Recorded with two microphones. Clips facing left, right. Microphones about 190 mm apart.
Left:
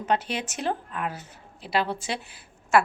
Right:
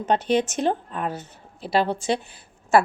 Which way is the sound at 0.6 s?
30° right (ahead or behind).